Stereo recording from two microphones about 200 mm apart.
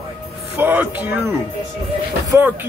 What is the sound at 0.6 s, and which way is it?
Speech, 10° right (ahead or behind).